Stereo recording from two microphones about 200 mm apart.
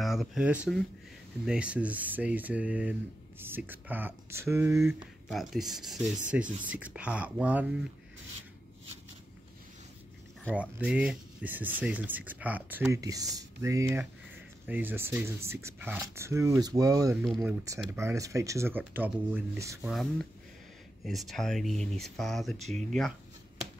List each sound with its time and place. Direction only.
0.0 s speech: centre (ahead or behind)
5.3 s speech: centre (ahead or behind)
10.5 s speech: 5° right (ahead or behind)
17.2 s speech: 5° right (ahead or behind)
19.9 s speech: centre (ahead or behind)
22.7 s speech: 35° right (ahead or behind)